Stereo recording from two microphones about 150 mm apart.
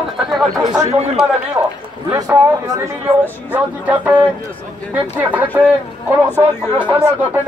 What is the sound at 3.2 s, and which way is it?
Speech, 10° right (ahead or behind).